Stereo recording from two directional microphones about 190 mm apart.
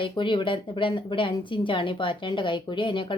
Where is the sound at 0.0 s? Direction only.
25° left (ahead or behind).